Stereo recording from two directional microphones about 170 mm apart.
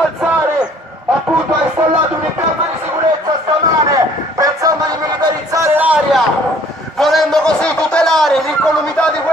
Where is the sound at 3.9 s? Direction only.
20° right (ahead or behind); by 8.4 s centre (ahead or behind).